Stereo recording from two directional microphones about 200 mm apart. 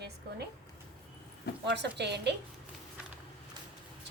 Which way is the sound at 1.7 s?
60° right (ahead or behind).